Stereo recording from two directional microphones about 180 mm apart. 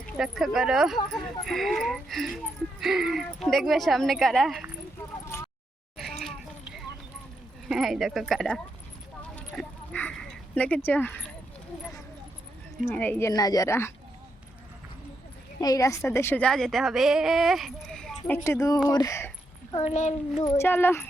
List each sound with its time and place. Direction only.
0.2 s a woman's voice: centre (ahead or behind)
6.0 s a sound: centre (ahead or behind)
7.7 s a woman's voice: centre (ahead or behind)
9.2 s a sound: 5° left (ahead or behind)
12.9 s a woman's voice: 10° left (ahead or behind)
15.6 s a woman's voice: 20° left (ahead or behind); by 18.2 s 5° left (ahead or behind)
18.4 s a woman's voice: 20° left (ahead or behind)
19.7 s a child's voice: 35° left (ahead or behind)
20.4 s a woman's voice: 15° left (ahead or behind)